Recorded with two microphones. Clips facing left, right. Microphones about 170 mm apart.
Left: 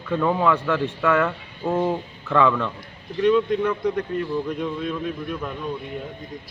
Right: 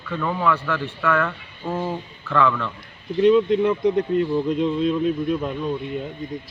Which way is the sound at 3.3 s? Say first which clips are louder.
Right 3 dB; 20° right (ahead or behind).